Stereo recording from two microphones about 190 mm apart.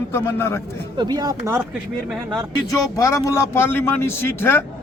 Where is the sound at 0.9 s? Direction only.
20° right (ahead or behind).